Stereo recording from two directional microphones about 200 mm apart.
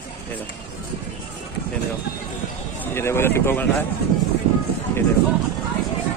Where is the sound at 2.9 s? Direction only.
10° left (ahead or behind).